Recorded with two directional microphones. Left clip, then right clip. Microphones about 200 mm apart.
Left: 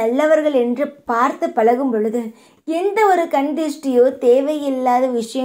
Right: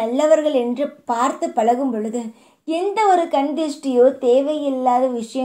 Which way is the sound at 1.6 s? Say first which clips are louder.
Left 3 dB; 15° left (ahead or behind).